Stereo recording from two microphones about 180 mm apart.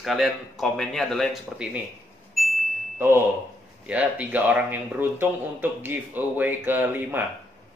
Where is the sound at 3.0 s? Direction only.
15° right (ahead or behind).